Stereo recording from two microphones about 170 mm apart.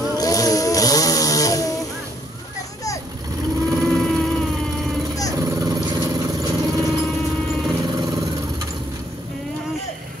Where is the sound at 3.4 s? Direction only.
20° right (ahead or behind).